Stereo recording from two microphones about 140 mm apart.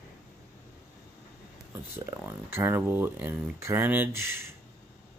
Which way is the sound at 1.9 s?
20° right (ahead or behind).